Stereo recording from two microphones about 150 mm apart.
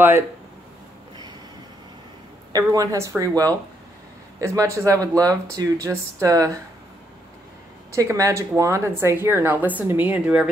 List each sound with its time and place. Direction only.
2.5 s speech: 25° right (ahead or behind)
7.9 s a woman's voice: 20° right (ahead or behind)